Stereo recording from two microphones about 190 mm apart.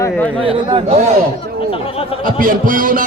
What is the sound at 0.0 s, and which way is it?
Speech, 10° left (ahead or behind).